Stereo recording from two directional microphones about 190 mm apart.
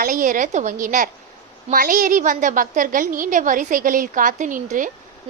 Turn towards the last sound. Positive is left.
turn(degrees=-45)  # may be behind; listen again after turning